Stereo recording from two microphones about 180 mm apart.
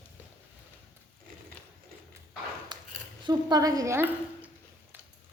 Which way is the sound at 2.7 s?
25° right (ahead or behind).